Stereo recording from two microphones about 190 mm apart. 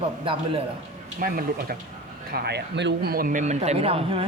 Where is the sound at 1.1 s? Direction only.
50° right (ahead or behind).